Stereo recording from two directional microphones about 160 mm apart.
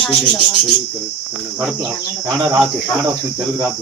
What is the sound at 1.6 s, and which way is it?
Speech, 5° right (ahead or behind).